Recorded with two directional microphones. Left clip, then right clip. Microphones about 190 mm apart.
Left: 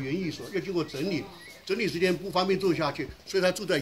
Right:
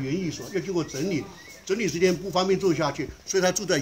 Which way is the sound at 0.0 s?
30° right (ahead or behind).